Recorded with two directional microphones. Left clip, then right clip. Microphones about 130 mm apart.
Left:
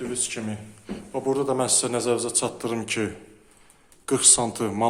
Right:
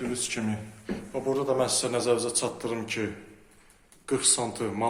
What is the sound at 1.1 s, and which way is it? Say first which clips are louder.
A man's voice: left 3 dB; 30° left (ahead or behind).